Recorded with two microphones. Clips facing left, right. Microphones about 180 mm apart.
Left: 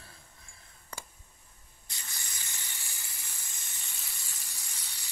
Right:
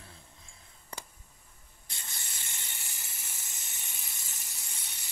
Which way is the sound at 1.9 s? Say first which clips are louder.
Even; 25° right (ahead or behind).